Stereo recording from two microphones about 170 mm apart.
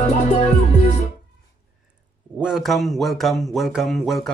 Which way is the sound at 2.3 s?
5° right (ahead or behind).